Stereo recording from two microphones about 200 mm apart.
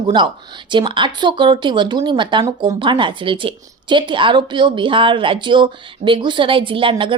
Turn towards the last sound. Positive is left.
turn(degrees=-25)  # may be behind; listen again after turning